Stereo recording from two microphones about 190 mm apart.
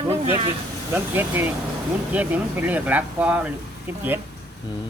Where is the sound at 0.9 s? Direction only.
10° right (ahead or behind).